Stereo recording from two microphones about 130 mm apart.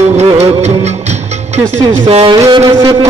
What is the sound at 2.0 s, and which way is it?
Music, 45° right (ahead or behind).